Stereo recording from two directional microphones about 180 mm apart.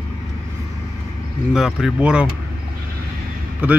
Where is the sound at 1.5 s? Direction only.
5° right (ahead or behind).